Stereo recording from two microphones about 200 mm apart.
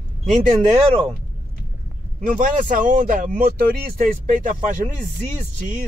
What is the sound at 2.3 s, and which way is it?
A man's voice, 40° right (ahead or behind).